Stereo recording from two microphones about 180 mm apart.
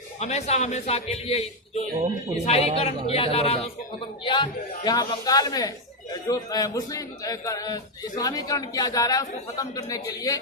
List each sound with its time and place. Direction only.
0.2 s speech: 35° left (ahead or behind); by 10.3 s 20° left (ahead or behind)